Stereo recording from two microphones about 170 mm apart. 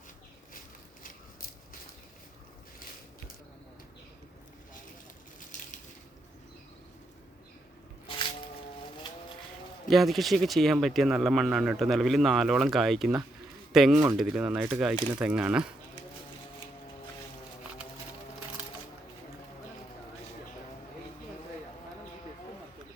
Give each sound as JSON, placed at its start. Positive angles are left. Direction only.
{"t": 5.5, "sound": "crushing", "side_deg": 50}
{"t": 8.0, "sound": "a sound", "side_deg": 30}
{"t": 9.9, "sound": "speech", "side_deg": 0}
{"t": 13.9, "sound": "speech", "side_deg": -15}
{"t": 14.2, "sound": "speech", "side_deg": -5}